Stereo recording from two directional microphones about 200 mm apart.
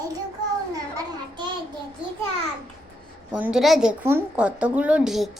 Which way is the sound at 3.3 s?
5° right (ahead or behind).